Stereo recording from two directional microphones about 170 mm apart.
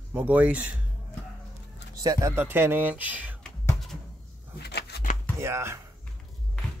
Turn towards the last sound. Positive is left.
turn(degrees=-15)  # may be behind; listen again after turning